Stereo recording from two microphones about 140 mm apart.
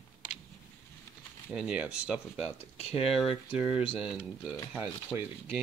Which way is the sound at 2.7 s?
45° left (ahead or behind).